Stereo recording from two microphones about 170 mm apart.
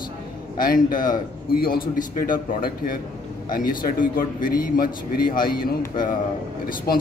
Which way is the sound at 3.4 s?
55° left (ahead or behind).